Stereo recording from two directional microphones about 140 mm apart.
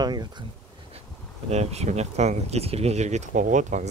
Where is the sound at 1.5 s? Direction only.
50° right (ahead or behind).